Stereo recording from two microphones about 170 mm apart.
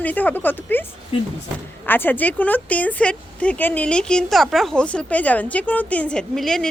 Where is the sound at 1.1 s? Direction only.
35° left (ahead or behind).